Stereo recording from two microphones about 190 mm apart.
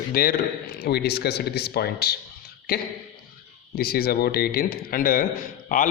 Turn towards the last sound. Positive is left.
turn(degrees=45)  # may be behind; listen again after turning